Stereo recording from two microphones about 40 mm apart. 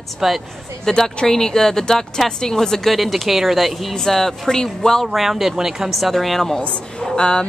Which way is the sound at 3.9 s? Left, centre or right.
Centre.